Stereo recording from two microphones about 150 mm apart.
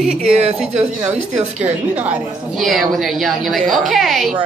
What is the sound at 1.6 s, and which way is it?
A woman's voice, 10° right (ahead or behind).